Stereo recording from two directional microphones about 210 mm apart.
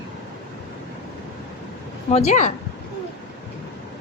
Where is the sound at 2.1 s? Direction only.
30° left (ahead or behind).